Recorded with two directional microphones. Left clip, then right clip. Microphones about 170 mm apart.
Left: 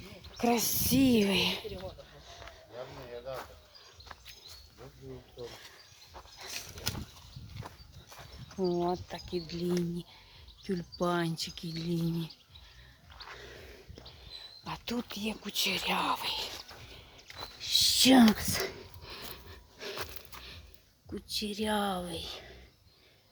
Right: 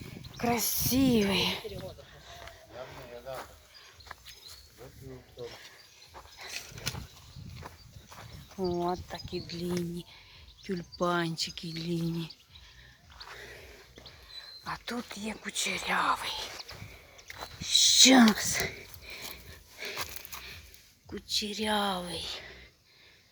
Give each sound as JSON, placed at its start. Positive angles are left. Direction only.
{"t": 0.5, "sound": "speech", "side_deg": 20}
{"t": 0.8, "sound": "speech", "side_deg": 10}
{"t": 6.3, "sound": "a sound", "side_deg": 20}
{"t": 7.6, "sound": "horse", "side_deg": -30}
{"t": 8.5, "sound": "speech", "side_deg": 5}
{"t": 10.7, "sound": "speech", "side_deg": 10}
{"t": 14.6, "sound": "cricket", "side_deg": 25}
{"t": 15.4, "sound": "speech", "side_deg": 25}
{"t": 17.7, "sound": "speech", "side_deg": 20}
{"t": 18.6, "sound": "a sound", "side_deg": 30}
{"t": 19.3, "sound": "wheeze", "side_deg": 30}
{"t": 20.0, "sound": "a sound", "side_deg": -70}
{"t": 21.1, "sound": "speech", "side_deg": 15}